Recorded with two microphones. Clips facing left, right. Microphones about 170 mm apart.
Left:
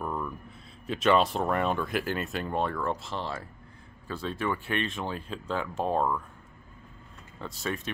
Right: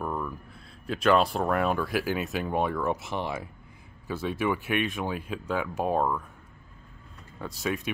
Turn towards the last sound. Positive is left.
turn(degrees=-15)  # may be behind; listen again after turning